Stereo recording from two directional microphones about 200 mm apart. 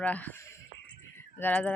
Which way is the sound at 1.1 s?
10° left (ahead or behind).